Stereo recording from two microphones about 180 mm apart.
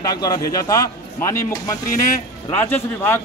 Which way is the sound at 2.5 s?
10° left (ahead or behind).